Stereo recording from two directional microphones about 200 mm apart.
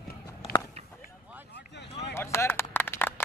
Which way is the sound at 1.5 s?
60° left (ahead or behind).